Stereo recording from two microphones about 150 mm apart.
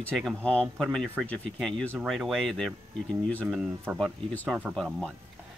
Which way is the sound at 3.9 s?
10° right (ahead or behind).